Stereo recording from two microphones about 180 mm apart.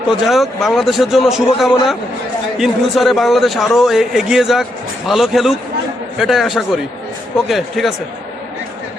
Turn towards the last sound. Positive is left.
turn(degrees=0)  # may be behind; listen again after turning